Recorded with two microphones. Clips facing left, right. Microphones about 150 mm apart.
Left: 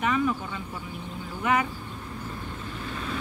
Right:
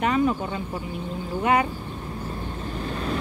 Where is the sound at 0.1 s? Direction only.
40° right (ahead or behind).